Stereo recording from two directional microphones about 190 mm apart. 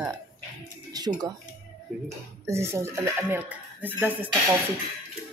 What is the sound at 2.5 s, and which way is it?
Speech, 15° right (ahead or behind).